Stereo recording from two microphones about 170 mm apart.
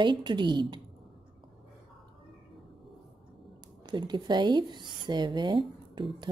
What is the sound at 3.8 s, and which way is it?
A woman's voice, 25° right (ahead or behind).